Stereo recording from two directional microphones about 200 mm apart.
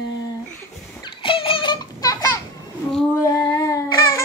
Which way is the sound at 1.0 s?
25° left (ahead or behind).